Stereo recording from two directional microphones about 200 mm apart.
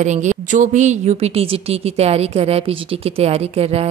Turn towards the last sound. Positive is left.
turn(degrees=-30)  # may be behind; listen again after turning